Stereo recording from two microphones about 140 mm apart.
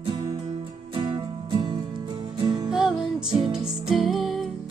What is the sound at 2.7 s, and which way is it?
Music, 5° right (ahead or behind).